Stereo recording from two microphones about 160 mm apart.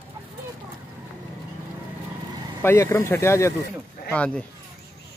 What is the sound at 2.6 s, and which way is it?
Speech, 15° left (ahead or behind).